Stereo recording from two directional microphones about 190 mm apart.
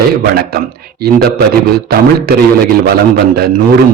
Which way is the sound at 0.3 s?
55° right (ahead or behind).